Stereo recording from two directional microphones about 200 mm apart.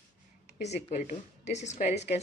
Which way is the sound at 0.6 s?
35° left (ahead or behind).